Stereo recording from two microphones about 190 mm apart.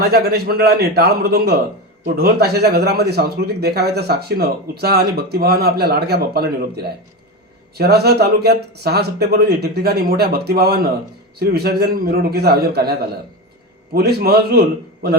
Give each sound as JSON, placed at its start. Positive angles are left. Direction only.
{"t": 0.0, "sound": "speech", "side_deg": -55}